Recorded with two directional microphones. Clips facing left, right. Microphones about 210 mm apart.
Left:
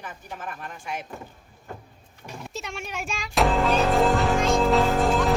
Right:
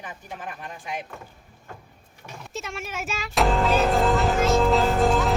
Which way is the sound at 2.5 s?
Centre (ahead or behind).